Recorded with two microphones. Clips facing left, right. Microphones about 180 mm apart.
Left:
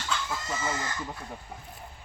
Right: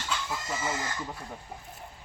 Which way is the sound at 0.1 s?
5° right (ahead or behind).